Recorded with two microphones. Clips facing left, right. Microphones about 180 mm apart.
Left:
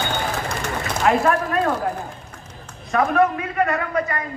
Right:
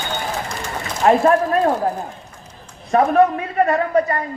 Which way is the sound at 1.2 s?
40° right (ahead or behind).